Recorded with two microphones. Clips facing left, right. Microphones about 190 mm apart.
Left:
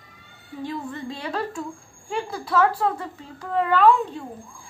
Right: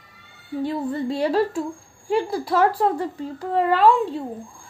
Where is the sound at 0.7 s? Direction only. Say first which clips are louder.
Right 6 dB; 35° right (ahead or behind).